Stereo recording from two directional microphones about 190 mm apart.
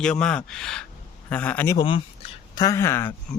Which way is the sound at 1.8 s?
25° left (ahead or behind).